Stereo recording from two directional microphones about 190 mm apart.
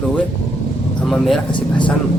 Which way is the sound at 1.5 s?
25° left (ahead or behind).